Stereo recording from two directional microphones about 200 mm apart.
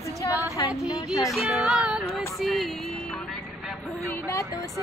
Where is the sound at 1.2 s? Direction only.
Centre (ahead or behind).